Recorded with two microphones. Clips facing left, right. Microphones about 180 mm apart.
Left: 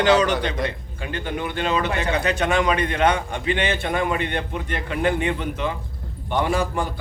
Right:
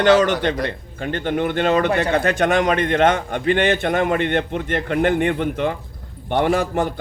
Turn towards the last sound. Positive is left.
turn(degrees=-55)  # may be behind; listen again after turning